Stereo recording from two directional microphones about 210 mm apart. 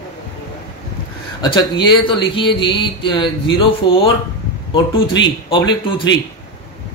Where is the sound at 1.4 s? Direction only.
20° left (ahead or behind).